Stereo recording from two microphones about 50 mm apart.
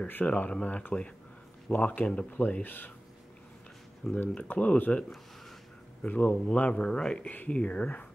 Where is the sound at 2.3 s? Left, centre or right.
Left.